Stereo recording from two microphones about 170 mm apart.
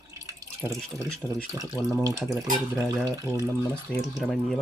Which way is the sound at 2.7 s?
20° right (ahead or behind).